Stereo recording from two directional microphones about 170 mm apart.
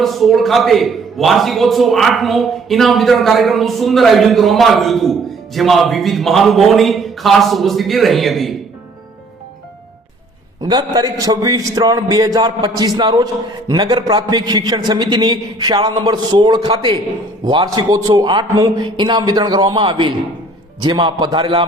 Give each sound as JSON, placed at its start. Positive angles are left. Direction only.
{"t": 0.0, "sound": "a man's voice", "side_deg": 0}
{"t": 10.6, "sound": "a man's voice", "side_deg": -25}